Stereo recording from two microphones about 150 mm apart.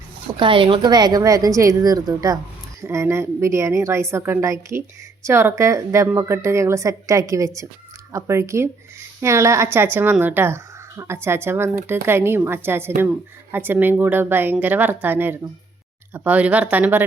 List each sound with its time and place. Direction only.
0.3 s a woman's voice: 35° right (ahead or behind); by 17.0 s 10° right (ahead or behind)